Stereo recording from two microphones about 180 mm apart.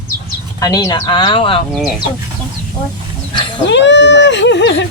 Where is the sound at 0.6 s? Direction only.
20° left (ahead or behind).